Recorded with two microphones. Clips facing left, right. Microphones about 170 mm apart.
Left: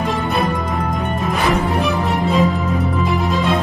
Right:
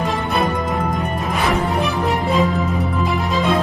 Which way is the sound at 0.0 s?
Centre (ahead or behind).